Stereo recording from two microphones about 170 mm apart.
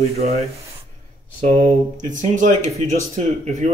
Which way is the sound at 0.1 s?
40° right (ahead or behind).